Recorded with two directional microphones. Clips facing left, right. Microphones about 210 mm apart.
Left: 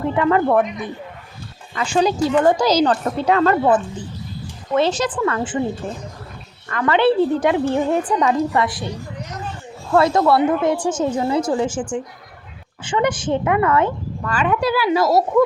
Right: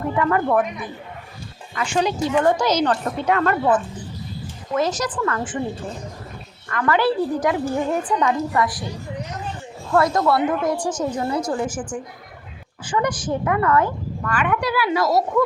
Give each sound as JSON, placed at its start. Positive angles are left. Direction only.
{"t": 0.2, "sound": "a woman's voice", "side_deg": 25}
{"t": 4.7, "sound": "a woman's voice", "side_deg": 30}
{"t": 6.7, "sound": "a woman's voice", "side_deg": 25}
{"t": 9.9, "sound": "a woman's voice", "side_deg": 25}